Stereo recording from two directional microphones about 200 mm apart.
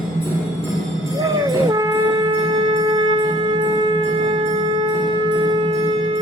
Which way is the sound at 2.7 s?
20° right (ahead or behind).